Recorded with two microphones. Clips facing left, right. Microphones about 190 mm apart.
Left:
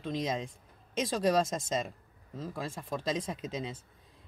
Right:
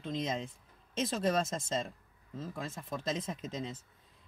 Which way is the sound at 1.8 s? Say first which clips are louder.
Left 2 dB; 15° left (ahead or behind).